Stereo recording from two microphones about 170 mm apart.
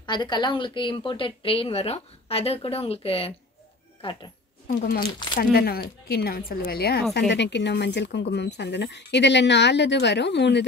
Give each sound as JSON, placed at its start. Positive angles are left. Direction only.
{"t": 0.0, "sound": "a woman's voice", "side_deg": 25}
{"t": 5.4, "sound": "speech", "side_deg": 60}
{"t": 7.2, "sound": "speech", "side_deg": 90}